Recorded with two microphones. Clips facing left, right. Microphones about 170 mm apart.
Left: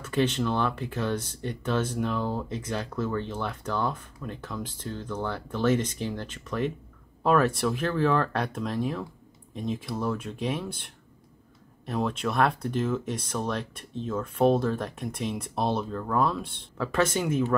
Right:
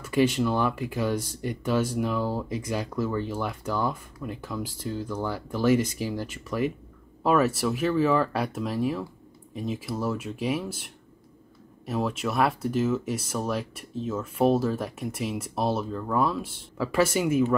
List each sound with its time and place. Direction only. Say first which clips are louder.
0.0 s speech: right 3 dB; 10° right (ahead or behind)